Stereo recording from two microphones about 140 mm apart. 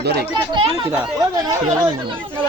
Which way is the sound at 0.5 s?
40° right (ahead or behind).